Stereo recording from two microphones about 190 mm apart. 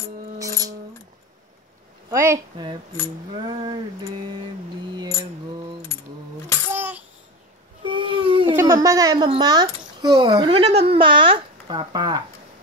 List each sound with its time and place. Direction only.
0.4 s music: 20° right (ahead or behind)
2.0 s a woman's voice: 15° right (ahead or behind)
6.7 s babbling: 10° right (ahead or behind)
7.8 s baby cry: 25° right (ahead or behind)
8.6 s a woman's voice: 20° right (ahead or behind)